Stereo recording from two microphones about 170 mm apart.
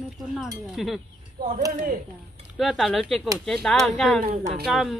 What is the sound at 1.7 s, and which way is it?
Speech, 50° right (ahead or behind).